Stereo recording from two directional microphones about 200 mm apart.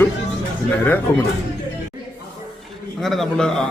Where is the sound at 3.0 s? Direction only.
Centre (ahead or behind).